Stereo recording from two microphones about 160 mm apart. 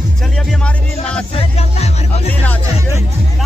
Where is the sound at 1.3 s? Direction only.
40° left (ahead or behind).